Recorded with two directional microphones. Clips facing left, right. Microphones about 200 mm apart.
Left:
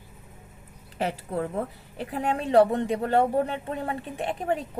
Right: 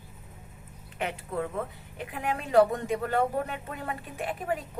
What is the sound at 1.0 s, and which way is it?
A woman's voice, 35° left (ahead or behind).